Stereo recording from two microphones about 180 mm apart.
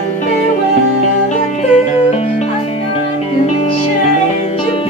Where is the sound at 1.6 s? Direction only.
40° left (ahead or behind).